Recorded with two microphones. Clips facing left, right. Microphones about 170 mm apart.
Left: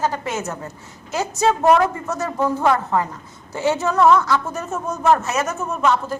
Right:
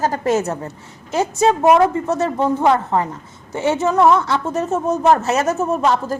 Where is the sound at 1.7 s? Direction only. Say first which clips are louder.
Right 4 dB; 30° right (ahead or behind).